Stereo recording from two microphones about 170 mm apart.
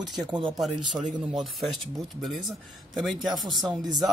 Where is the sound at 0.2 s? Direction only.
25° right (ahead or behind).